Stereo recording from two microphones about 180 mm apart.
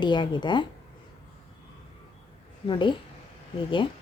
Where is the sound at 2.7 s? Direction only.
25° left (ahead or behind).